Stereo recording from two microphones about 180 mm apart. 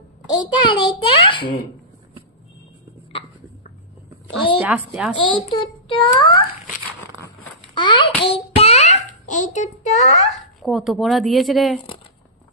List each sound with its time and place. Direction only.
0.3 s a child's voice: 25° left (ahead or behind)
4.6 s a woman's voice: 5° right (ahead or behind)
5.1 s a child's voice: 25° left (ahead or behind)
7.7 s a child's voice: 25° left (ahead or behind)
8.3 s a sound: 35° left (ahead or behind)
10.3 s speech: centre (ahead or behind)